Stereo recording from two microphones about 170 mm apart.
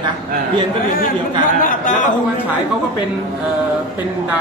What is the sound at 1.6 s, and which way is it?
Speech, 50° left (ahead or behind).